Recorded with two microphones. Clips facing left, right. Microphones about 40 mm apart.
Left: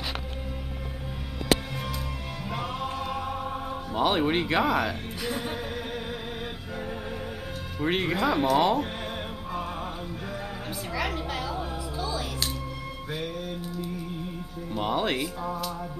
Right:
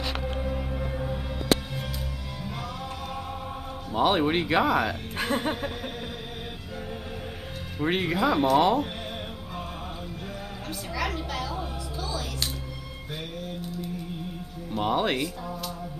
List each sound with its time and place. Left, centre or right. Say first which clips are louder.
2.5 s music: left 7 dB; left
3.9 s speech: right 2 dB; centre
5.2 s chuckle: right 5 dB; right
7.8 s speech: right 1 dB; centre
11.0 s music: even; centre
14.7 s speech: right 2 dB; centre